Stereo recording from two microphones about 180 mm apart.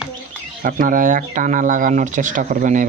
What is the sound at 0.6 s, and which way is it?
Speech, 50° right (ahead or behind).